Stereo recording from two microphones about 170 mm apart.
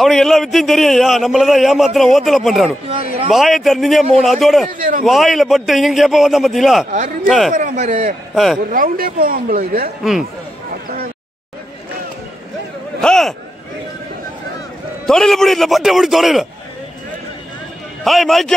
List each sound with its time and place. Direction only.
0.0 s a man's voice: centre (ahead or behind)
4.7 s speech: 55° right (ahead or behind)
5.0 s a man's voice: centre (ahead or behind)
7.5 s a man's voice: 45° right (ahead or behind)
13.0 s a man's voice: 5° left (ahead or behind)
15.0 s a man's voice: centre (ahead or behind)
18.0 s a man's voice: centre (ahead or behind)